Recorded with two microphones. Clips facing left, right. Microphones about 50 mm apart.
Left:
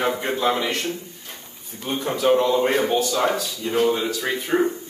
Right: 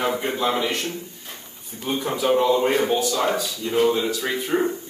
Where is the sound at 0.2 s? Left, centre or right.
Centre.